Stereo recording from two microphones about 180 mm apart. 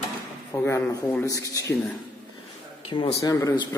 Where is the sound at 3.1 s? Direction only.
20° left (ahead or behind).